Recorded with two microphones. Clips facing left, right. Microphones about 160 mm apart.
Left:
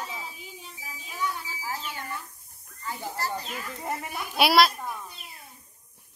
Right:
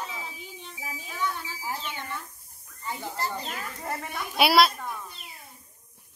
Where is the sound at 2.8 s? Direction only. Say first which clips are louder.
Even; 20° right (ahead or behind).